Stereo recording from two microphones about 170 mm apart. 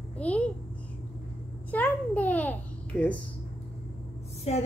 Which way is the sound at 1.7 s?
10° left (ahead or behind).